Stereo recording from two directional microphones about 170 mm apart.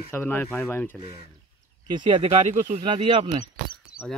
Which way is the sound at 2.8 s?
30° right (ahead or behind).